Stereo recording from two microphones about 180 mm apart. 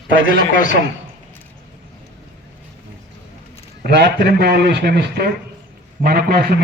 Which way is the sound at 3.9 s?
65° right (ahead or behind).